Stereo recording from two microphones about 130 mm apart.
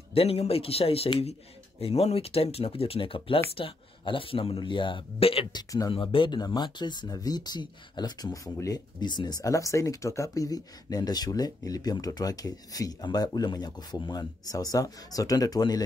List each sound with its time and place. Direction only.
0.1 s speech: 50° left (ahead or behind); by 15.8 s 30° left (ahead or behind)